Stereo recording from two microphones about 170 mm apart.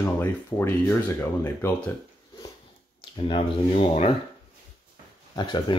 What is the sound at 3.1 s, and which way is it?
Speech, 30° left (ahead or behind).